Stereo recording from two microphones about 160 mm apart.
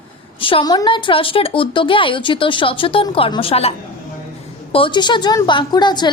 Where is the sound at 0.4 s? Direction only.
30° left (ahead or behind).